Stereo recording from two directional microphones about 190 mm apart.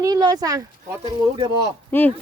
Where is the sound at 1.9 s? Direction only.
10° left (ahead or behind).